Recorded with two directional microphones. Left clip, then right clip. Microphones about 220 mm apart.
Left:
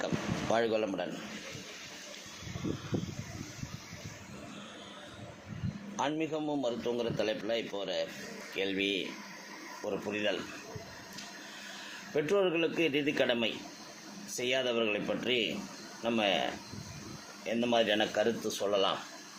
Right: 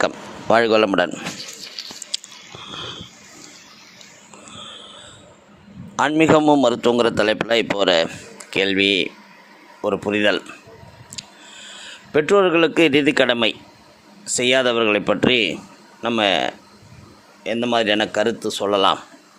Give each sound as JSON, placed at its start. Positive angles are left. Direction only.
{"t": 0.5, "sound": "a man's voice", "side_deg": -45}
{"t": 6.0, "sound": "a man's voice", "side_deg": -50}
{"t": 12.1, "sound": "a man's voice", "side_deg": -45}